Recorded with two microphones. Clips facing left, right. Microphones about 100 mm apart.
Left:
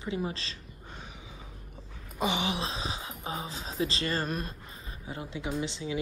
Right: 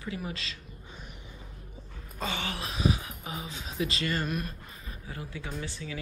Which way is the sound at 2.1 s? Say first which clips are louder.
Left 5 dB; 15° left (ahead or behind).